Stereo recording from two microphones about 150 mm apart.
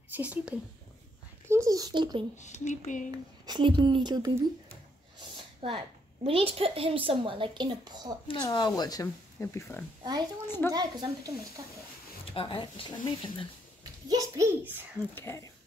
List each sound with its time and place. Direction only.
0.1 s speech: 10° right (ahead or behind)
1.5 s speech: 20° right (ahead or behind)
2.3 s speech: 50° left (ahead or behind)
3.4 s a child's voice: 30° right (ahead or behind)
5.6 s a woman's voice: 35° right (ahead or behind)
8.3 s a child's voice: 25° left (ahead or behind)
10.7 s a child's voice: 25° right (ahead or behind)
12.4 s speech: 35° left (ahead or behind)
14.0 s a child's voice: 25° right (ahead or behind)
15.1 s speech: 20° left (ahead or behind)